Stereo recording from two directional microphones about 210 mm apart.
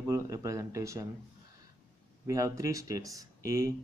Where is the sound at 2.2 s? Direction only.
15° right (ahead or behind).